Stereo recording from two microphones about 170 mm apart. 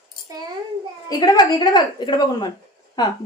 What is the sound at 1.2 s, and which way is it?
Speech, 25° left (ahead or behind).